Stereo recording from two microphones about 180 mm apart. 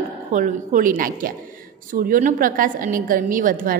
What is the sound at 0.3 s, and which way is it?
A woman's voice, 45° right (ahead or behind).